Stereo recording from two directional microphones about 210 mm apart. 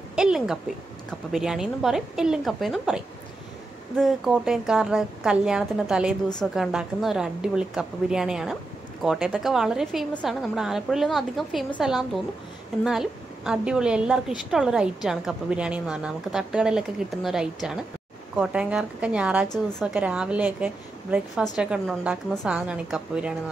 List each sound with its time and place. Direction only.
0.1 s a sound: 5° right (ahead or behind)
1.3 s a woman's voice: centre (ahead or behind)
4.0 s a woman's voice: centre (ahead or behind)